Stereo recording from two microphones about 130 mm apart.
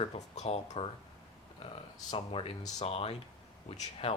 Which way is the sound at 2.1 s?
45° left (ahead or behind).